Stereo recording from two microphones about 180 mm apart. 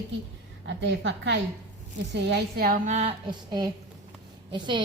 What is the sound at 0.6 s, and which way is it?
Speech, 80° right.